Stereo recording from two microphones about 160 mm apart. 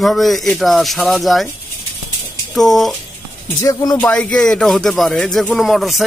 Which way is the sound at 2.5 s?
Centre (ahead or behind).